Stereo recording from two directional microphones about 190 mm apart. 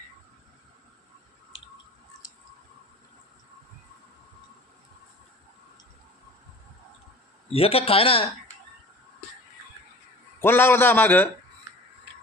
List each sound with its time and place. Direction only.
7.5 s speech: 30° left (ahead or behind)
10.4 s a man's voice: 10° left (ahead or behind)